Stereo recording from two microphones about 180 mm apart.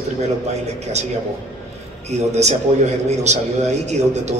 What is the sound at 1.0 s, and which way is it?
A man's voice, 40° right (ahead or behind).